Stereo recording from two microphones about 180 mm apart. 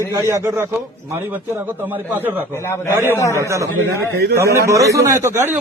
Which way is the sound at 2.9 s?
15° right (ahead or behind).